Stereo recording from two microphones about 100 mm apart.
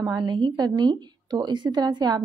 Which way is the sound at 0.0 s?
45° right (ahead or behind).